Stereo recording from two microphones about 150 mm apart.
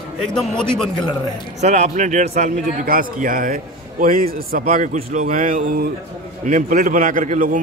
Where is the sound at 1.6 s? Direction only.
50° right (ahead or behind).